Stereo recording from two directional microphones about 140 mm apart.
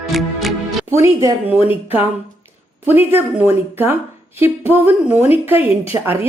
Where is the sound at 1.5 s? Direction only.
40° left (ahead or behind).